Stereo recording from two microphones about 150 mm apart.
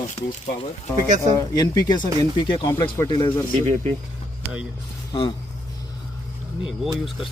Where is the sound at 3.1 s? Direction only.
30° left (ahead or behind).